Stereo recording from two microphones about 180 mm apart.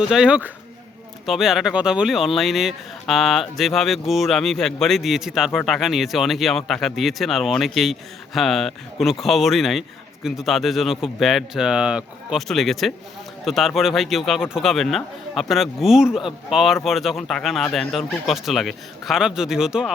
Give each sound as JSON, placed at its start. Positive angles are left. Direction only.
{"t": 0.0, "sound": "speech", "side_deg": -5}